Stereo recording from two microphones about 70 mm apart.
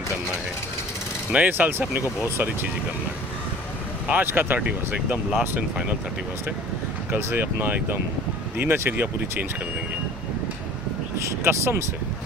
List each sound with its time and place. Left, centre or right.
1.3 s speech: right
4.1 s speech: right
7.1 s speech: right
11.1 s speech: right